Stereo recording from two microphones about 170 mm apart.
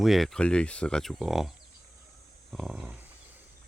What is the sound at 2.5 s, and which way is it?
Speech, 5° right (ahead or behind).